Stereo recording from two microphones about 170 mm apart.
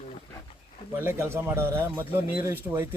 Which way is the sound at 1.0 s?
15° right (ahead or behind).